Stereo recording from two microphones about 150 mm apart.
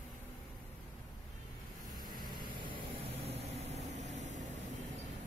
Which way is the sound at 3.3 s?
45° right (ahead or behind).